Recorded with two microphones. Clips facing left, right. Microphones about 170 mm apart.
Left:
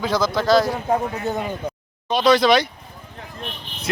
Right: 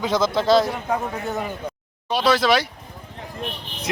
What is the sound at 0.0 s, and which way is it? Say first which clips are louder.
Speech: even; 25° right (ahead or behind).